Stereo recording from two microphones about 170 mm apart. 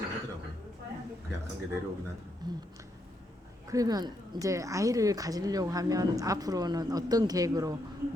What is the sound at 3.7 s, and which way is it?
A woman's voice, 20° right (ahead or behind).